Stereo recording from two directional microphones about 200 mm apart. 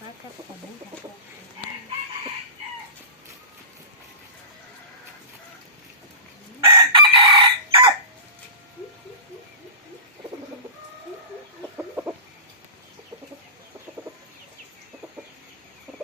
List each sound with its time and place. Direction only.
6.7 s chicken: 25° right (ahead or behind)
11.8 s chicken: 10° right (ahead or behind)